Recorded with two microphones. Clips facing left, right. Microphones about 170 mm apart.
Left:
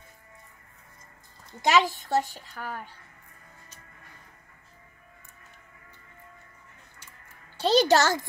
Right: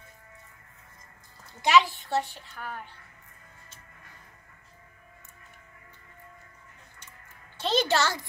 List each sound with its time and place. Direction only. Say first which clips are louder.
1.6 s a child's voice: right 1 dB; 45° left (ahead or behind)
7.6 s speech: left 5 dB; 40° left (ahead or behind)